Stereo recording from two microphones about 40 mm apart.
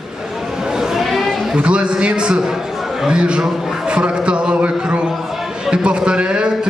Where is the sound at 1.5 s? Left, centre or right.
Right.